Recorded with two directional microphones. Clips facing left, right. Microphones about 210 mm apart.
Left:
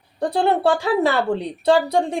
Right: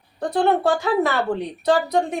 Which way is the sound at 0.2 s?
30° left (ahead or behind).